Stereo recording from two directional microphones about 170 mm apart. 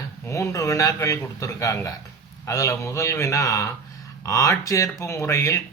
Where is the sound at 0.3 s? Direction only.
20° left (ahead or behind).